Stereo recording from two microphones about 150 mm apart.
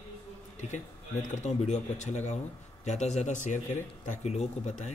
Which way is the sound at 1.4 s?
50° left (ahead or behind).